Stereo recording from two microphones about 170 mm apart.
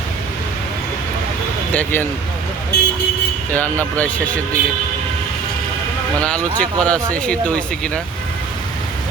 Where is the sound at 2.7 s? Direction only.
80° left.